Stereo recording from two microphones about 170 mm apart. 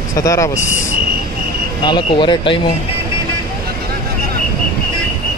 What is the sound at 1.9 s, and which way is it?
Speech, 30° left (ahead or behind).